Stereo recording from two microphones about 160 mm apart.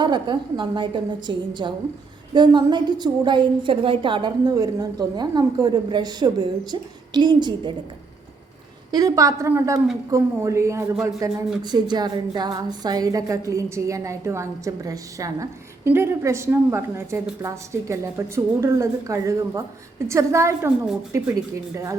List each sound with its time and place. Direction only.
0.0 s a woman's voice: 30° right (ahead or behind)
8.9 s a woman's voice: 25° right (ahead or behind)